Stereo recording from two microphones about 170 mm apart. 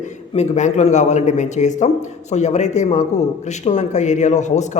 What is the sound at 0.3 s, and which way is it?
A man's voice, 40° left (ahead or behind).